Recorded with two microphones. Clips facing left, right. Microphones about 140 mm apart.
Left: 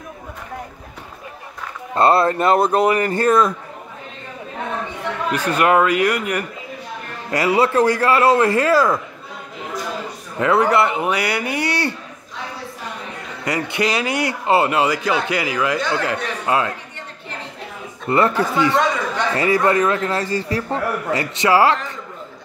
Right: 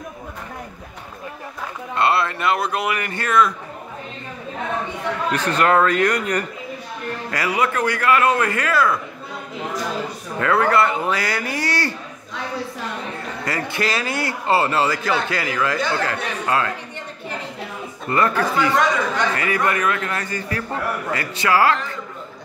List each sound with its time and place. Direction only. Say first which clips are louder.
2.0 s speech: left 5 dB; 40° left (ahead or behind)
5.3 s speech: left 2 dB; 10° left (ahead or behind)
7.2 s speech: left 5 dB; 25° left (ahead or behind)
10.4 s a man's voice: left 2 dB; 20° left (ahead or behind)
13.5 s a man's voice: left 3 dB; 20° left (ahead or behind)
18.0 s a man's voice: left 2 dB; 25° left (ahead or behind)